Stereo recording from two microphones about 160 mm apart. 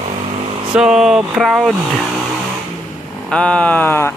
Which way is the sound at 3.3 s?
5° left (ahead or behind).